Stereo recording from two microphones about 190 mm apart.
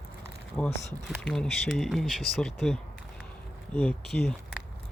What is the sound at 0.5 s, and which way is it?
Speech, 5° left (ahead or behind).